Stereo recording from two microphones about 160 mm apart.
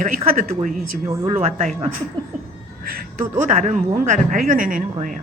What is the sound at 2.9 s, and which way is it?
A woman's voice, 50° right (ahead or behind).